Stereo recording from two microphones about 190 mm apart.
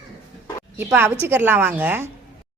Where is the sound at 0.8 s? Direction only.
10° right (ahead or behind).